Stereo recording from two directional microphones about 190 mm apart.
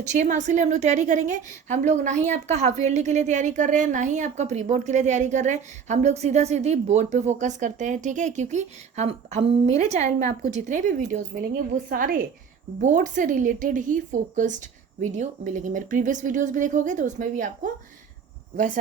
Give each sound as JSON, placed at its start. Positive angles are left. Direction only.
{"t": 0.1, "sound": "a woman's voice", "side_deg": -40}